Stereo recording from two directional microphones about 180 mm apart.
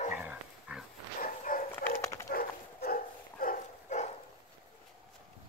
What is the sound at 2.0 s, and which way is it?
Dog, 15° left (ahead or behind).